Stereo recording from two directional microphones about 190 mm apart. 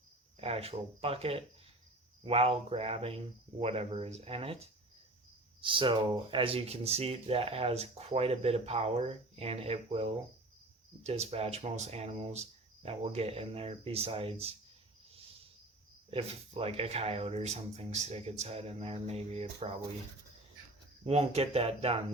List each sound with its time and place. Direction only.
0.3 s speech: 30° right (ahead or behind)
16.0 s speech: 30° right (ahead or behind)
21.0 s speech: 35° right (ahead or behind)